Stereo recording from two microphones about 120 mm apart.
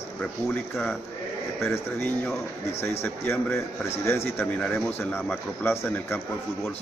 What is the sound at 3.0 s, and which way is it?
A man's voice, 20° left (ahead or behind).